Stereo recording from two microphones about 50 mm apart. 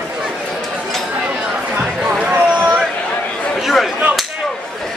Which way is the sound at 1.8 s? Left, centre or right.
Right.